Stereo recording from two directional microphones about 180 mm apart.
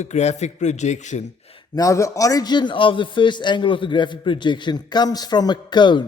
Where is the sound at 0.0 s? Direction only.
40° left (ahead or behind).